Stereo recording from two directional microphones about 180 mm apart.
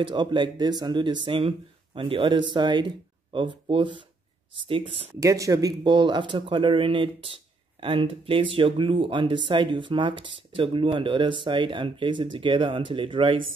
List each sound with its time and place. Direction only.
0.0 s speech: 25° right (ahead or behind)
5.2 s speech: 15° right (ahead or behind)